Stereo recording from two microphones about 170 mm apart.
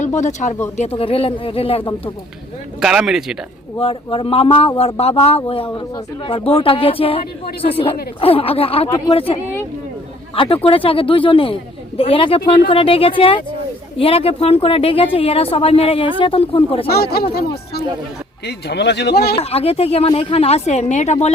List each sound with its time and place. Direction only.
0.2 s speech: 45° left (ahead or behind)
0.8 s speech: 35° left (ahead or behind)
2.8 s speech: 5° right (ahead or behind)
3.8 s speech: 30° left (ahead or behind)
16.9 s speech: 70° left (ahead or behind)
18.4 s speech: 80° left
19.4 s speech: 35° left (ahead or behind)